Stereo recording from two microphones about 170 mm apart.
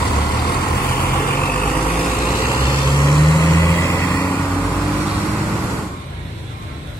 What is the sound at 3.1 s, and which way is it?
Vehicle, 20° left (ahead or behind).